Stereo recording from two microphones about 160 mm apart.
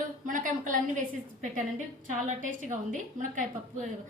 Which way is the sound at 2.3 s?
55° right (ahead or behind).